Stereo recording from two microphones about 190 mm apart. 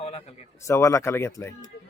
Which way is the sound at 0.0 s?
35° left (ahead or behind).